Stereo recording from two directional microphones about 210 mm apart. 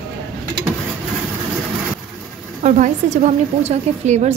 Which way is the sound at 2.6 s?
35° right (ahead or behind).